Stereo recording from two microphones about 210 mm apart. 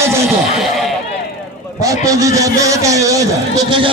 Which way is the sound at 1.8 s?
15° right (ahead or behind).